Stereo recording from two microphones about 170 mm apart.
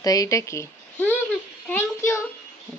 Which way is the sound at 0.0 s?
20° left (ahead or behind).